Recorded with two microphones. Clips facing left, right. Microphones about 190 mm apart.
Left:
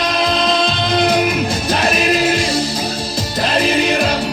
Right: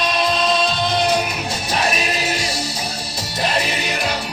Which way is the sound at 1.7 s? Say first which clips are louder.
Left 5 dB; 90° left.